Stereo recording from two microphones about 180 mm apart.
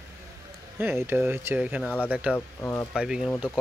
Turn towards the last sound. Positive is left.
turn(degrees=-5)  # may be behind; listen again after turning